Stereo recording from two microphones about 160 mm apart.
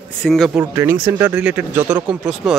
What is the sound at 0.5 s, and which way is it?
Speech, 15° right (ahead or behind).